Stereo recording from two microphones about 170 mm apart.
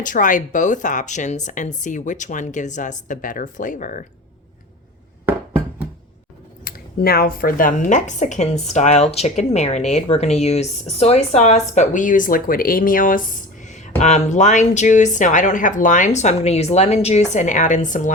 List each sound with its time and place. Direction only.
0.0 s speech: 50° left (ahead or behind)
6.7 s speech: 60° left (ahead or behind)